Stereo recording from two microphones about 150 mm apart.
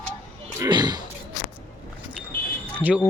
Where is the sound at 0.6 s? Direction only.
30° right (ahead or behind).